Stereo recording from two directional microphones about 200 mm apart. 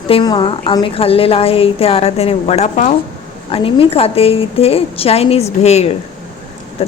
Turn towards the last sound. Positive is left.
turn(degrees=30)  # may be behind; listen again after turning